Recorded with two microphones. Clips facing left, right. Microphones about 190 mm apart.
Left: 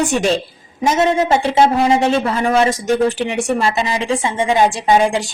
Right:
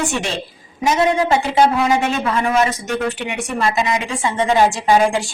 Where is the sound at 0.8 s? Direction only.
25° left (ahead or behind).